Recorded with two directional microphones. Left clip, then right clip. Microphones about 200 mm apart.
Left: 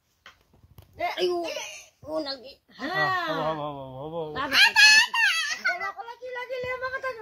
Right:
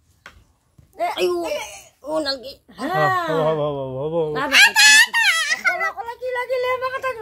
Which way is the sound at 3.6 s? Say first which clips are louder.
Right 11 dB; 55° right (ahead or behind).